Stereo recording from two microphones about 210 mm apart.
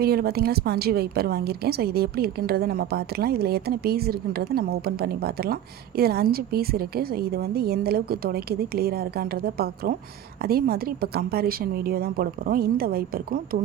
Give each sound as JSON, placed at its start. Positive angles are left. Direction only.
{"t": 0.0, "sound": "a woman's voice", "side_deg": -45}